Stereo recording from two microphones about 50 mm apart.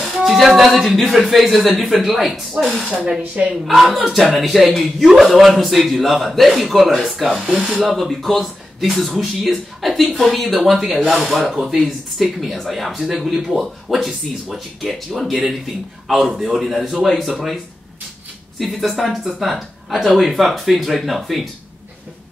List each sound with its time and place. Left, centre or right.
0.0 s a man's voice: centre
2.9 s speech: centre
3.6 s a man's voice: centre
18.6 s a man's voice: centre